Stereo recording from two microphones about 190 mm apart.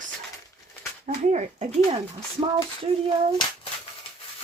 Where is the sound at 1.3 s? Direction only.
35° right (ahead or behind).